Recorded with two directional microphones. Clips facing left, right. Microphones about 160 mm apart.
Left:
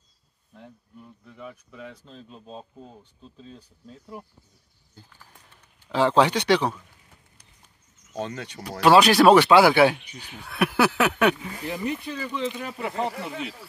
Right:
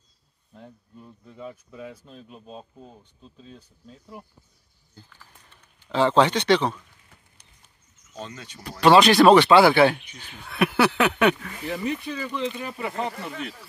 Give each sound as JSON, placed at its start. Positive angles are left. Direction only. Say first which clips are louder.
{"t": 0.6, "sound": "speech", "louder": "right 1 dB", "side_deg": -20}
{"t": 5.1, "sound": "a sound", "louder": "even", "side_deg": 10}
{"t": 8.2, "sound": "speech", "louder": "left 6 dB", "side_deg": 65}
{"t": 8.8, "sound": "speech", "louder": "right 1 dB", "side_deg": 10}